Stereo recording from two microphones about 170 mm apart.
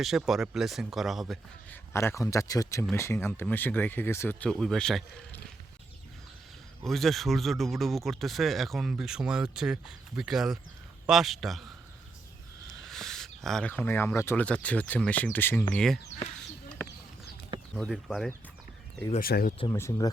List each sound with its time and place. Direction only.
0.0 s speech: centre (ahead or behind)
1.7 s speech: 15° left (ahead or behind)
6.8 s speech: centre (ahead or behind)
12.7 s speech: centre (ahead or behind)
17.7 s speech: centre (ahead or behind)
19.2 s speech: 60° left (ahead or behind)
19.7 s speech: 15° left (ahead or behind)